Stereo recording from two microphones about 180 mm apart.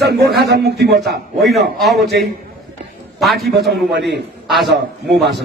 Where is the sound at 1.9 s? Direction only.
65° right (ahead or behind).